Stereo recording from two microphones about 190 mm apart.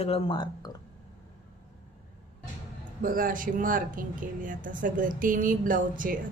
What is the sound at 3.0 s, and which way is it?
Speech, 45° right (ahead or behind).